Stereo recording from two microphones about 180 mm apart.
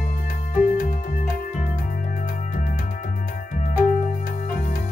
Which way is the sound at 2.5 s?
45° left (ahead or behind).